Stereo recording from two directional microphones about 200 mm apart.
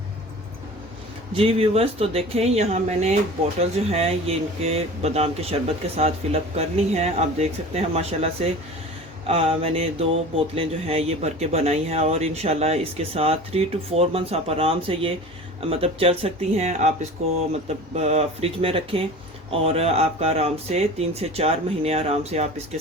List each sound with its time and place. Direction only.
1.3 s speech: 30° right (ahead or behind)